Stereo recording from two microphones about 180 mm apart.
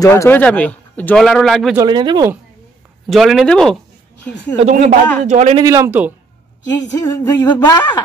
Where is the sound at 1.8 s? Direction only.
25° right (ahead or behind).